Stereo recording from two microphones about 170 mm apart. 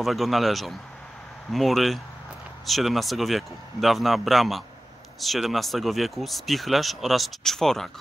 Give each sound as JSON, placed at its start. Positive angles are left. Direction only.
{"t": 0.0, "sound": "speech", "side_deg": 0}